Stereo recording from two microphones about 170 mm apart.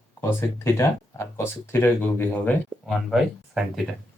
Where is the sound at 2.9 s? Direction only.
Centre (ahead or behind).